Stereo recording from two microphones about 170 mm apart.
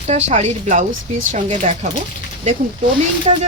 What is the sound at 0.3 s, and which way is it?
Speech, 45° right (ahead or behind).